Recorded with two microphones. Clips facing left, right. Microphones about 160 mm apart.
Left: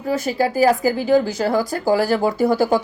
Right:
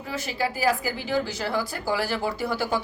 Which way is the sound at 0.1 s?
45° left (ahead or behind).